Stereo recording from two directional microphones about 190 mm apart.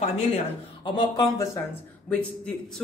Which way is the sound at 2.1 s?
5° left (ahead or behind).